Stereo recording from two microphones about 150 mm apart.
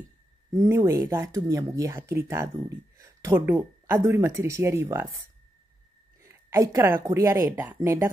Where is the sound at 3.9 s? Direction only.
20° right (ahead or behind).